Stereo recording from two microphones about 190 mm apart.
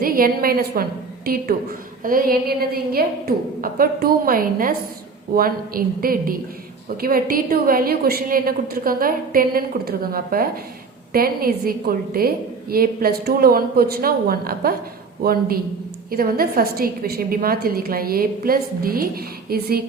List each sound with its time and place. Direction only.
0.0 s a woman's voice: 50° right (ahead or behind)